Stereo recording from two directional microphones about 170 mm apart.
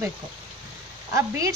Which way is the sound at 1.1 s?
20° right (ahead or behind).